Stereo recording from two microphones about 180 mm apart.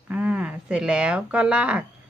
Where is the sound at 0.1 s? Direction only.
5° right (ahead or behind).